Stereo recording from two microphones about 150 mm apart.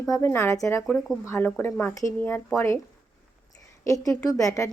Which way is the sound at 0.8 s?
Centre (ahead or behind).